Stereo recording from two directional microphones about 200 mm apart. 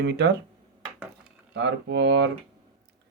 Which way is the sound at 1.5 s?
60° right (ahead or behind).